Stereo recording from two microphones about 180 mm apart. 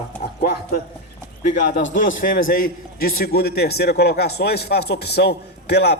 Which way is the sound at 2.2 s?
50° left (ahead or behind).